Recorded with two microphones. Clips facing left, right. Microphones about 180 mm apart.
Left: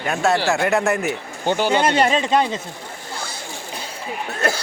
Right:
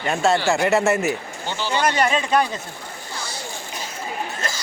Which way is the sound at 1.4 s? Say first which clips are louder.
Left 7 dB; 50° left (ahead or behind).